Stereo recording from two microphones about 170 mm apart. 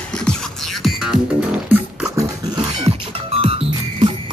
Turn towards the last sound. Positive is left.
turn(degrees=-35)  # may be behind; listen again after turning